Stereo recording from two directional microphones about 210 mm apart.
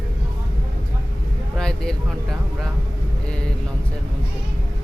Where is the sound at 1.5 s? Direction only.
5° left (ahead or behind).